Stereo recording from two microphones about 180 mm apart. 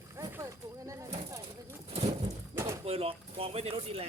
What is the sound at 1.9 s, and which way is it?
Pigeon, 35° right (ahead or behind).